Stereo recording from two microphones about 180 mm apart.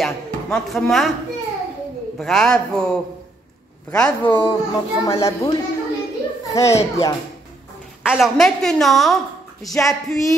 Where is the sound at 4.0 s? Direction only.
5° left (ahead or behind).